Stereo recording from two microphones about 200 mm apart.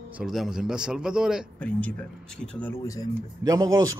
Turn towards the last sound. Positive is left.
turn(degrees=-20)  # may be behind; listen again after turning